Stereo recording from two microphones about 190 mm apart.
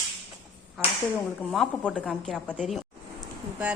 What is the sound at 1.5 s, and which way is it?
Speech, 5° left (ahead or behind).